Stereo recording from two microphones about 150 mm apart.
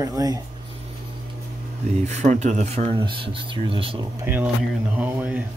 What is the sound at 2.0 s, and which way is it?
Speech, 50° right (ahead or behind).